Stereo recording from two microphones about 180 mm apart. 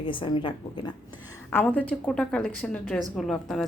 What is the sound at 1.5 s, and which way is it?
A woman's voice, 5° left (ahead or behind).